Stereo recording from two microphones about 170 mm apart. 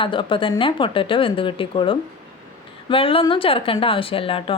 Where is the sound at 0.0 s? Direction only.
30° left (ahead or behind).